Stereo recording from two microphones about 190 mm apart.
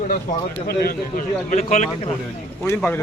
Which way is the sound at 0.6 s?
50° left (ahead or behind).